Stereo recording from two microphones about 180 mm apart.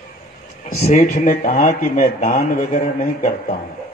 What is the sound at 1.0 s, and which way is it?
Speech, 55° left (ahead or behind).